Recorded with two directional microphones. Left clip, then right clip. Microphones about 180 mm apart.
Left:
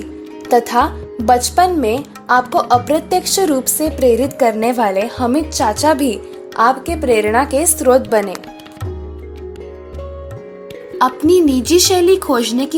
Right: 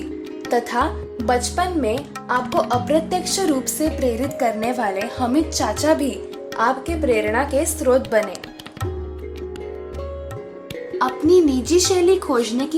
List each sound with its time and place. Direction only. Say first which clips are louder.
0.5 s a woman's voice: left 7 dB; 40° left (ahead or behind)
10.9 s speech: left 4 dB; 35° left (ahead or behind)